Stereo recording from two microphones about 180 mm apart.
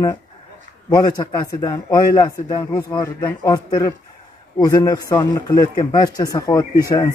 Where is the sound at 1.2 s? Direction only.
25° left (ahead or behind).